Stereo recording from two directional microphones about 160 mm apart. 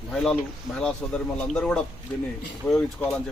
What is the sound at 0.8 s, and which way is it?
Speech, 5° left (ahead or behind).